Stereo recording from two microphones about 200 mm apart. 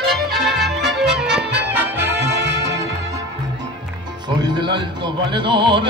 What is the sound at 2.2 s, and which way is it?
Music, 60° right (ahead or behind).